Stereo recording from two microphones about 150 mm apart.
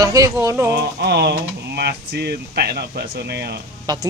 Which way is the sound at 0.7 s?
90° right.